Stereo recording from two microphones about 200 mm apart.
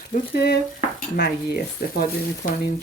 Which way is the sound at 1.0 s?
55° left (ahead or behind).